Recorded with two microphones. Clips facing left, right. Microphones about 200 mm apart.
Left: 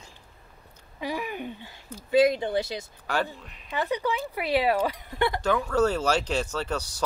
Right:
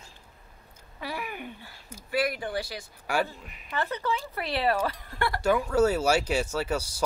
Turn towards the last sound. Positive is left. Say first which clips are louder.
# right 1 dB
turn(degrees=-10)  # may be behind; listen again after turning